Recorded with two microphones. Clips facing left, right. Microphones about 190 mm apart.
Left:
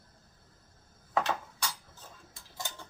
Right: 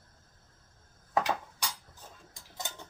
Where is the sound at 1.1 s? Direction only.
15° right (ahead or behind).